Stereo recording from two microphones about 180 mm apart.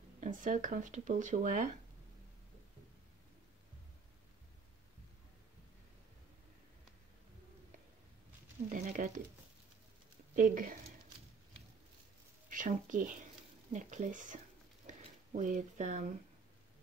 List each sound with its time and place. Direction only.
0.2 s speech: 45° right (ahead or behind)
8.6 s a sound: 40° right (ahead or behind)
10.3 s speech: 50° right (ahead or behind)
12.4 s speech: 45° right (ahead or behind)